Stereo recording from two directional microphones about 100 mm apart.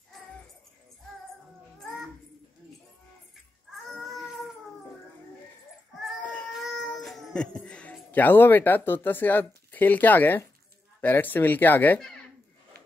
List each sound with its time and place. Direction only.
3.8 s baby cry: centre (ahead or behind)
6.6 s speech: centre (ahead or behind); by 12.0 s 15° left (ahead or behind)